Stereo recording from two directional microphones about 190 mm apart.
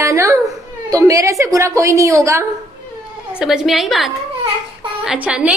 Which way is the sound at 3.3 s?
5° right (ahead or behind).